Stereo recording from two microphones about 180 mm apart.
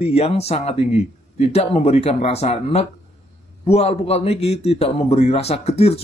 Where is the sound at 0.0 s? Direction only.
35° left (ahead or behind).